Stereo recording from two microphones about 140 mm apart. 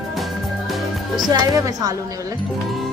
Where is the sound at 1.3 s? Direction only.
25° right (ahead or behind).